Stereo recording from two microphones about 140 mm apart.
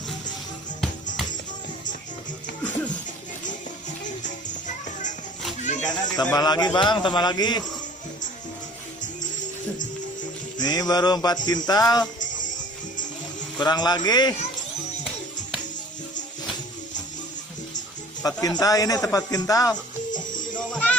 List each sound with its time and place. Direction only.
4.2 s music: 60° left (ahead or behind)
5.9 s a sound: 30° left (ahead or behind)
6.3 s a man's voice: 30° left (ahead or behind)
10.6 s a man's voice: 30° left (ahead or behind)
12.2 s music: 65° left (ahead or behind)
13.6 s a man's voice: 30° left (ahead or behind)
18.2 s a man's voice: 25° left (ahead or behind)
20.1 s music: 65° left (ahead or behind)
20.5 s music: 10° left (ahead or behind)